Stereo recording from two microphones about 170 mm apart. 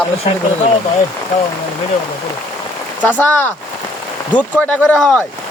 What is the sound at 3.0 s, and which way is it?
Speech, 10° left (ahead or behind).